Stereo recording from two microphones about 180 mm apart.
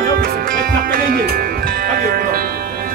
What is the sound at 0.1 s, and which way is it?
Music, 55° right (ahead or behind).